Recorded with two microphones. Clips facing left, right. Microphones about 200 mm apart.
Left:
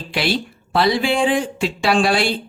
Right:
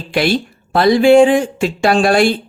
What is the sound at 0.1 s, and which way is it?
Speech, 50° right (ahead or behind).